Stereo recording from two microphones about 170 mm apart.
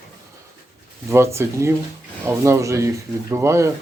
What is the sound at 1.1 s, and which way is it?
Speech, 15° right (ahead or behind).